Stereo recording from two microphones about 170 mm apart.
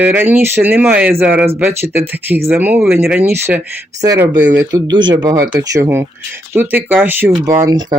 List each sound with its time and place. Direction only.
0.0 s speech: 10° right (ahead or behind)